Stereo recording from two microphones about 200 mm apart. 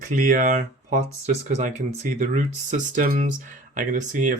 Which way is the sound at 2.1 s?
40° right (ahead or behind).